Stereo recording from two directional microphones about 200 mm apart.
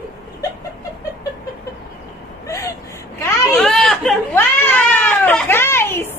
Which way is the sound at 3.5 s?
Centre (ahead or behind).